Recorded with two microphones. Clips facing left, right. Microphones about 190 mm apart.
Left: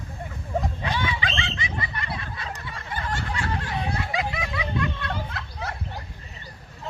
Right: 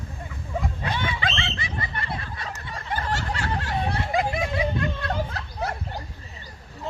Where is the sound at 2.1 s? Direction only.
50° right (ahead or behind).